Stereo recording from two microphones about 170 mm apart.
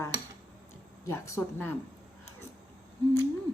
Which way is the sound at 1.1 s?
15° left (ahead or behind).